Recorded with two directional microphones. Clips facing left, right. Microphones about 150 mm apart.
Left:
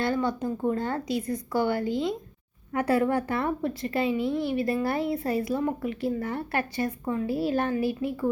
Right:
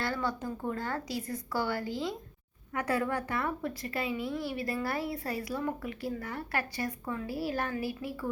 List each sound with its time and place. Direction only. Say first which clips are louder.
0.0 s a woman's voice: left 7 dB; 20° left (ahead or behind)